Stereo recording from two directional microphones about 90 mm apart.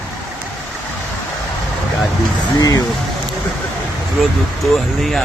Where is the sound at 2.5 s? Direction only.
45° left (ahead or behind).